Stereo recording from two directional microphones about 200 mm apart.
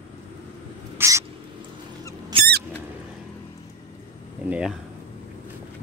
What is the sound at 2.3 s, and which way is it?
Rodents, 30° right (ahead or behind).